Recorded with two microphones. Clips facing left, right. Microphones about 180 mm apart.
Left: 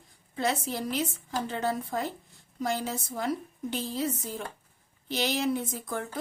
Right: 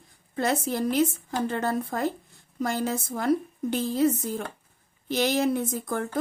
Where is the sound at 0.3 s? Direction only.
50° right (ahead or behind).